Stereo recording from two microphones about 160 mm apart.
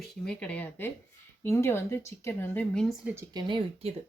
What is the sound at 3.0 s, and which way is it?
Speech, 15° right (ahead or behind).